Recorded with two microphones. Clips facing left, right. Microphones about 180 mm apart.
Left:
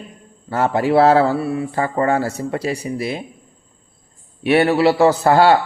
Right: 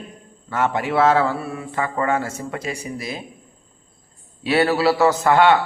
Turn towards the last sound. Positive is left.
turn(degrees=35)  # may be behind; listen again after turning